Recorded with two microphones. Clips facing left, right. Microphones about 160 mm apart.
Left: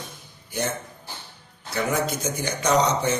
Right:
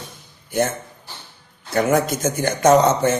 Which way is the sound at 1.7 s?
50° right (ahead or behind).